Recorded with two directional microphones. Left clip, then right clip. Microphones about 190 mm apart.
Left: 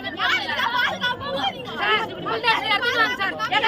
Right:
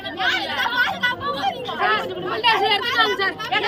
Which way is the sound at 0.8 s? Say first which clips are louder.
Right 2 dB; 10° left (ahead or behind).